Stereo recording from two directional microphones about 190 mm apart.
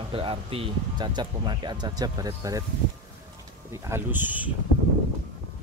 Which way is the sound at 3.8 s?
10° right (ahead or behind).